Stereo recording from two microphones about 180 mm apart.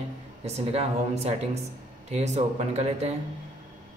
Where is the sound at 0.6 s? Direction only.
35° right (ahead or behind).